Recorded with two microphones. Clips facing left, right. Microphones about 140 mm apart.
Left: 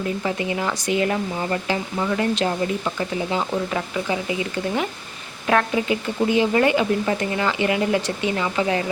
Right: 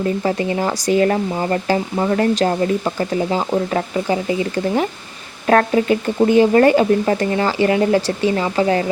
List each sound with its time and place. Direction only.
0.2 s speech: 40° right (ahead or behind)